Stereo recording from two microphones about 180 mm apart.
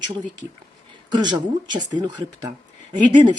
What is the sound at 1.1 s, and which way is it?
A woman's voice, 25° right (ahead or behind).